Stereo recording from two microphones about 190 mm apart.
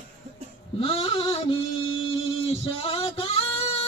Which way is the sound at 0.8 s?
30° left (ahead or behind).